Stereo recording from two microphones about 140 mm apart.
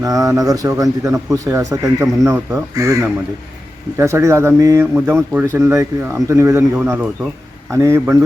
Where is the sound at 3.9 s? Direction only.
20° right (ahead or behind).